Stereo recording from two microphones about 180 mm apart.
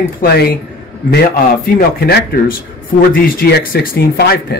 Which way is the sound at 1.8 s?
55° left (ahead or behind).